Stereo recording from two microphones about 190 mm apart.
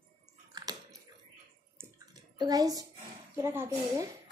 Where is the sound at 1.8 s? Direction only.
15° right (ahead or behind).